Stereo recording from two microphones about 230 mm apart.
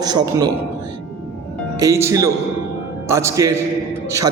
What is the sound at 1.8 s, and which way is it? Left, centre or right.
A man's voice, centre.